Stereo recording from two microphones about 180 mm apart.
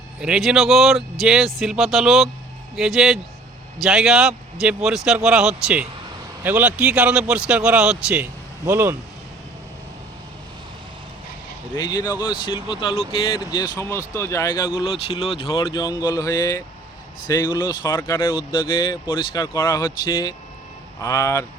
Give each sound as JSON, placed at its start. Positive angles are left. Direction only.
{"t": 0.2, "sound": "speech", "side_deg": -5}
{"t": 11.8, "sound": "speech", "side_deg": 25}
{"t": 14.8, "sound": "speech", "side_deg": 30}
{"t": 18.2, "sound": "speech", "side_deg": 25}